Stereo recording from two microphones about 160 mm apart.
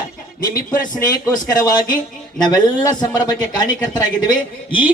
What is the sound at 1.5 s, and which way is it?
Speech, 25° left (ahead or behind).